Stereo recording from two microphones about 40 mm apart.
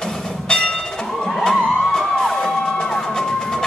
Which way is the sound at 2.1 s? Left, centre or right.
Centre.